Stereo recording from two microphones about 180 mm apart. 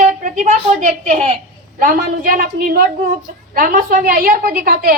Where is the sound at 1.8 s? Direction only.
50° right (ahead or behind).